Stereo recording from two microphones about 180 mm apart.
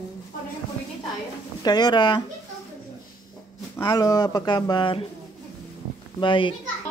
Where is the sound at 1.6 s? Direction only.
25° left (ahead or behind).